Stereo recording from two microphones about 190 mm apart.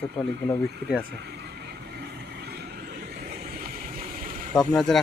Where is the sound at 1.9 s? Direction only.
60° right (ahead or behind).